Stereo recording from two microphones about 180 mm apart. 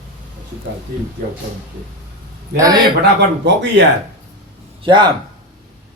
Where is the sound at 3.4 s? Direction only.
80° right.